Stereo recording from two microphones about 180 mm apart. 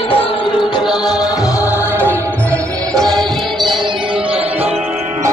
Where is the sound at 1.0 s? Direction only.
20° left (ahead or behind); by 3.7 s centre (ahead or behind).